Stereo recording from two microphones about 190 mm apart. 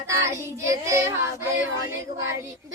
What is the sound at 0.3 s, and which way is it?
Child singing, 15° right (ahead or behind).